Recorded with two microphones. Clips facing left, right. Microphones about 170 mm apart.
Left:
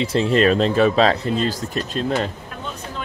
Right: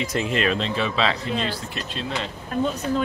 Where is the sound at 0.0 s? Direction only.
30° left (ahead or behind); by 2.3 s 45° left (ahead or behind).